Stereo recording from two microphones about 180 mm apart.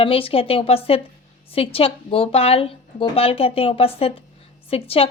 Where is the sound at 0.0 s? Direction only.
30° left (ahead or behind).